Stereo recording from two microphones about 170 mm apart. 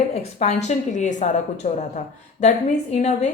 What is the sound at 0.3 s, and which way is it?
A woman's voice, 40° left (ahead or behind).